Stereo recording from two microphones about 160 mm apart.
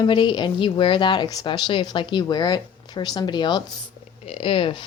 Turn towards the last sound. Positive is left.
turn(degrees=35)  # may be behind; listen again after turning